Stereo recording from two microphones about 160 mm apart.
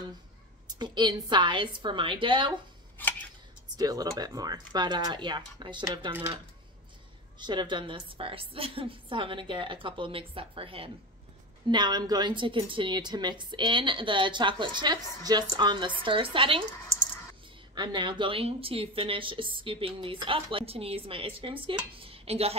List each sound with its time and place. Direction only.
0.7 s a woman's voice: 25° right (ahead or behind)
3.7 s a woman's voice: 25° right (ahead or behind)
7.3 s a woman's voice: 30° right (ahead or behind)
17.7 s speech: 25° right (ahead or behind)